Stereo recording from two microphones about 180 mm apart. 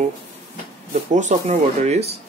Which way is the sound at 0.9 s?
40° right (ahead or behind).